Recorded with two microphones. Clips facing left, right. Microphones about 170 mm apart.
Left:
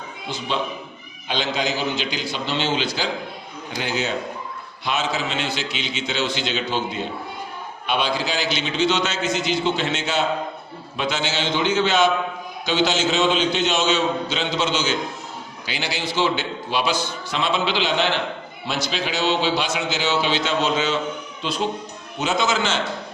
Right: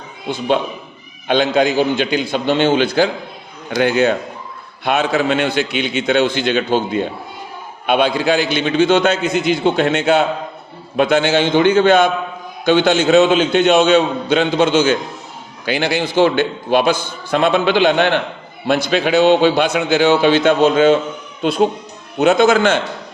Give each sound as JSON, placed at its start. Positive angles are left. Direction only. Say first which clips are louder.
{"t": 0.3, "sound": "a man's voice", "louder": "right 8 dB", "side_deg": -55}